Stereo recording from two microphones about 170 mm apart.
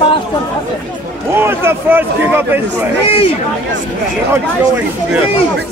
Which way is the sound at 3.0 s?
35° left (ahead or behind).